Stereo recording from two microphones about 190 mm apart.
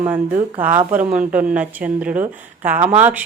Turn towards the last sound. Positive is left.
turn(degrees=-10)  # may be behind; listen again after turning